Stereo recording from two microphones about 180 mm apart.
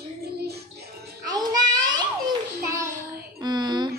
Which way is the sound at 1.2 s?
20° right (ahead or behind).